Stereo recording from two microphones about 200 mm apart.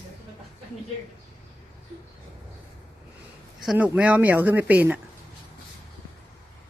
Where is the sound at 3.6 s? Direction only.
5° right (ahead or behind).